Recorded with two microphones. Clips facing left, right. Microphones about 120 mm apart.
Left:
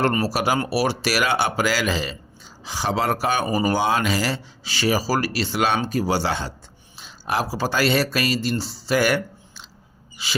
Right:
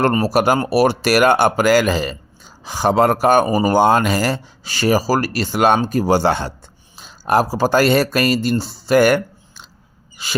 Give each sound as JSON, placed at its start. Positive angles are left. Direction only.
{"t": 0.1, "sound": "speech", "side_deg": -50}
{"t": 6.9, "sound": "speech", "side_deg": -45}